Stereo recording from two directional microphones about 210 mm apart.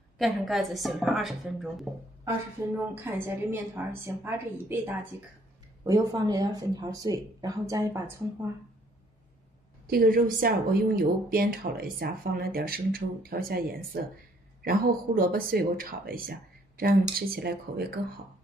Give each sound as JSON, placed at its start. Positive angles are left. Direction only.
{"t": 0.2, "sound": "a woman's voice", "side_deg": 0}
{"t": 2.9, "sound": "speech", "side_deg": -10}
{"t": 9.8, "sound": "speech", "side_deg": -45}